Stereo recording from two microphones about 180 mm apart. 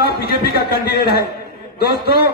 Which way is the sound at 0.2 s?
60° left (ahead or behind).